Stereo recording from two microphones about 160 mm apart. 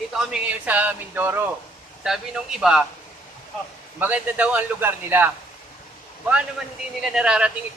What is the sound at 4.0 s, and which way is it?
A man's voice, 10° right (ahead or behind).